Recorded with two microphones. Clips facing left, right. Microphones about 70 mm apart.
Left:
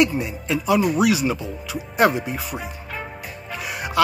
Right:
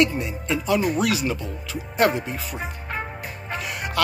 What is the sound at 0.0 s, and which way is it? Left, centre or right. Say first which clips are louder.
Speech: left 2 dB; centre.